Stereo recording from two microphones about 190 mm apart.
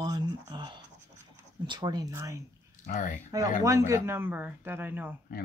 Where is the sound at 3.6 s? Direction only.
15° right (ahead or behind).